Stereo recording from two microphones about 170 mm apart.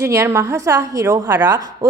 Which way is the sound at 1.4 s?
25° right (ahead or behind).